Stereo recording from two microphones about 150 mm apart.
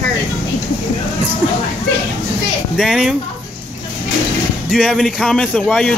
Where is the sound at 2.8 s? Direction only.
Centre (ahead or behind).